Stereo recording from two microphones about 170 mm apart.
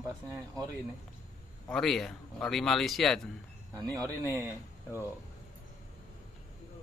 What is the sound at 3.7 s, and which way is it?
Speech, 20° right (ahead or behind).